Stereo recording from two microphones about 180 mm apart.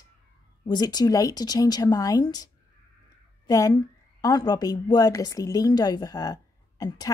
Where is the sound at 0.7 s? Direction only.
20° left (ahead or behind).